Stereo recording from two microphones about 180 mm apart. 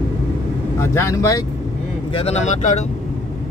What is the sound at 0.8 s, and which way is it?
Speech, 15° left (ahead or behind).